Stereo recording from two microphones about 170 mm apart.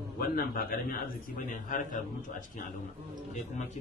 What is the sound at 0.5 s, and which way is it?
A man's voice, 60° left (ahead or behind).